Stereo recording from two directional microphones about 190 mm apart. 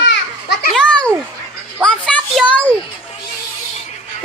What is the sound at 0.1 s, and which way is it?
Children playing, 60° left (ahead or behind).